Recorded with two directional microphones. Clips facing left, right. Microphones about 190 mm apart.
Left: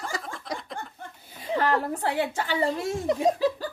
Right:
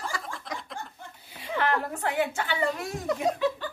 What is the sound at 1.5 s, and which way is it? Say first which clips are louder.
Speech: left 3 dB; 35° left (ahead or behind).